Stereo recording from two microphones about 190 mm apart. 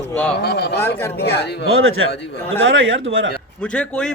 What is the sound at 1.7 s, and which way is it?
Speech, 90° right.